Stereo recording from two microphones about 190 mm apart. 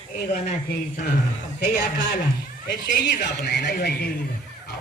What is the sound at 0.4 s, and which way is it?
Speech, 35° left (ahead or behind).